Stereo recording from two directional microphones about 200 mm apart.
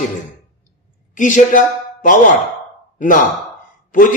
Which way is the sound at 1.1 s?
40° left (ahead or behind).